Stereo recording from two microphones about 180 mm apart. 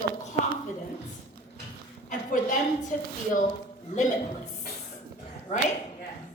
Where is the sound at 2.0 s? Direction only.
45° left (ahead or behind).